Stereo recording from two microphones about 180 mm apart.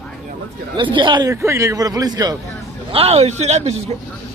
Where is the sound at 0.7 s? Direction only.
25° right (ahead or behind).